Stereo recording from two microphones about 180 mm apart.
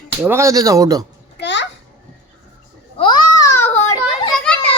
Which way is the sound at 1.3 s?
75° left (ahead or behind).